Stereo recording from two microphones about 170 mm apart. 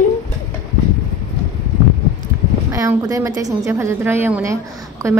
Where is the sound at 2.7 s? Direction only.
20° right (ahead or behind).